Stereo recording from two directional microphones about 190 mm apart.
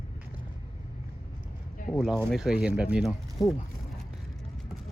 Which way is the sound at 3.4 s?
20° left (ahead or behind).